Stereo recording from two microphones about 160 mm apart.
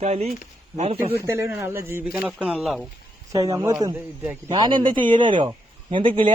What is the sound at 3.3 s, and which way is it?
Speech, 20° right (ahead or behind).